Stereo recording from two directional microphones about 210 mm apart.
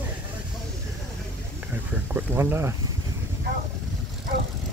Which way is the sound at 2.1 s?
10° right (ahead or behind).